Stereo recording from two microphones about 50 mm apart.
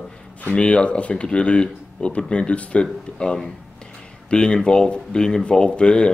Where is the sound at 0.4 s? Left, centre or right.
Left.